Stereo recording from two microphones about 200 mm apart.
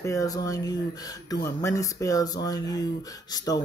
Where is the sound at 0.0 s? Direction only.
15° left (ahead or behind).